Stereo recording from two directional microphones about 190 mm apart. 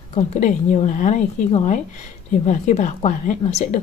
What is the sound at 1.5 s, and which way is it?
A woman's voice, 30° left (ahead or behind).